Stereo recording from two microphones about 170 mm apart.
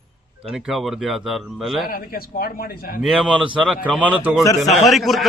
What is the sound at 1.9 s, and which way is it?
Speech, 60° left (ahead or behind).